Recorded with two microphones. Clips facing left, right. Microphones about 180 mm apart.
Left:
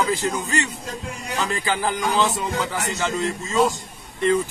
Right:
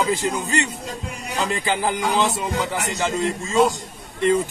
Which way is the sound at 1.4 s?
20° right (ahead or behind).